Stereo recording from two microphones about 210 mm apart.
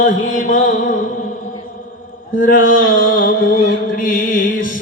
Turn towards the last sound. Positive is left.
turn(degrees=40)  # may be behind; listen again after turning